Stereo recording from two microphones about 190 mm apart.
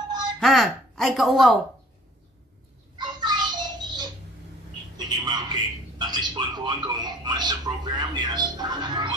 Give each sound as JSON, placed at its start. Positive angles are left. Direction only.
{"t": 0.4, "sound": "speech", "side_deg": 0}
{"t": 3.0, "sound": "a sound", "side_deg": -20}
{"t": 4.9, "sound": "a man's voice", "side_deg": -20}